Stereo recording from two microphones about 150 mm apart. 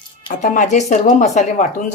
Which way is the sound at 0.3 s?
55° left (ahead or behind).